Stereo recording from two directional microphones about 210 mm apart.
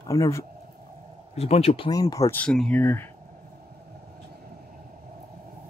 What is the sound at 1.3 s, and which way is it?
Speech, 30° left (ahead or behind).